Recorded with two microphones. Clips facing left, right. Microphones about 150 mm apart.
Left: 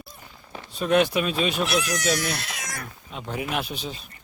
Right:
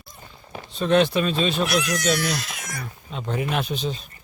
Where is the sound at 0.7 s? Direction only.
10° left (ahead or behind).